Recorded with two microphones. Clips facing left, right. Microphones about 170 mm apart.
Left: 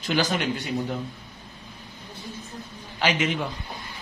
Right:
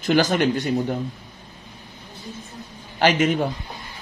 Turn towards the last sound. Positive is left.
turn(degrees=-45)  # may be behind; listen again after turning